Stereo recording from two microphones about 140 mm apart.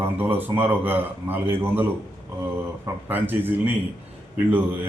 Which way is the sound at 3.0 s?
15° right (ahead or behind).